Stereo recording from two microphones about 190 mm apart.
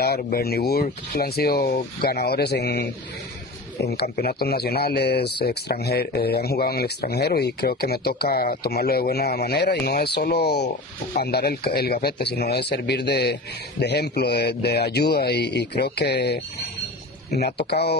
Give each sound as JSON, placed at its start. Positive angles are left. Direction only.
{"t": 0.0, "sound": "speech", "side_deg": 55}
{"t": 17.6, "sound": "speech", "side_deg": 60}